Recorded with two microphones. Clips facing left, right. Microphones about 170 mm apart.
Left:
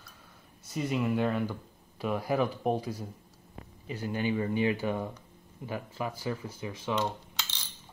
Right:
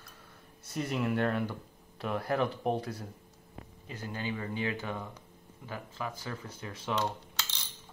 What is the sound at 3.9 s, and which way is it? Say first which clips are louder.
Speech: left 6 dB; 15° left (ahead or behind).